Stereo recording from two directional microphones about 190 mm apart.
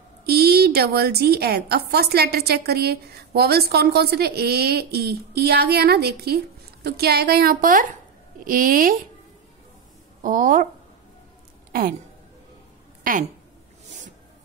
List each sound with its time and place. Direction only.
0.3 s a woman's voice: 55° right (ahead or behind)
10.2 s speech: 45° right (ahead or behind)
13.0 s speech: 45° right (ahead or behind)